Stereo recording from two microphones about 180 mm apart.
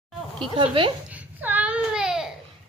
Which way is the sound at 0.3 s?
30° right (ahead or behind).